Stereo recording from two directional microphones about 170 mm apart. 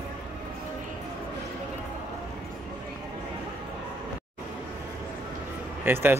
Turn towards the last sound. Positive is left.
turn(degrees=-15)  # may be behind; listen again after turning